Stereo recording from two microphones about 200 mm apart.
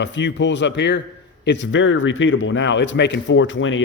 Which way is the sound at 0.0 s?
65° left (ahead or behind).